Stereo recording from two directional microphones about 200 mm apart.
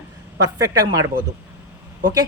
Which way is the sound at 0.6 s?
15° right (ahead or behind).